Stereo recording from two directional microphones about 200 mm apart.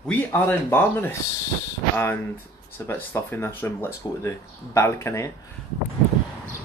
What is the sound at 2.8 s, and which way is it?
Speech, 10° left (ahead or behind).